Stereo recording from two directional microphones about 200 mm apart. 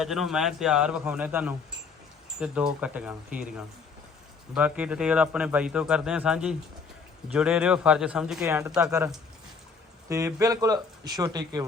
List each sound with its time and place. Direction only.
0.0 s speech: centre (ahead or behind)
4.5 s speech: 5° right (ahead or behind)
10.1 s speech: 15° right (ahead or behind)